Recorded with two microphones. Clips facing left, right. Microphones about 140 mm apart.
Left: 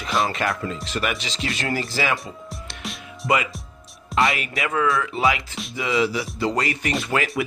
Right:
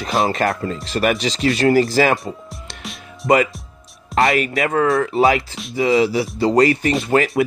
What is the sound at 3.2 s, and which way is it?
Speech, 45° right (ahead or behind).